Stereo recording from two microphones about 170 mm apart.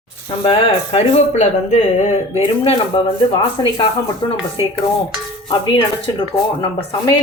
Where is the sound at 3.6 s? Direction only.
25° left (ahead or behind).